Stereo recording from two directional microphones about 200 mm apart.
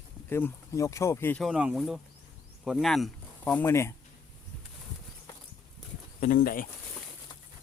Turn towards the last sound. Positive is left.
turn(degrees=45)  # may be behind; listen again after turning